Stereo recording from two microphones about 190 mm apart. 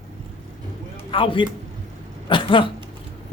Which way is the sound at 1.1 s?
25° left (ahead or behind).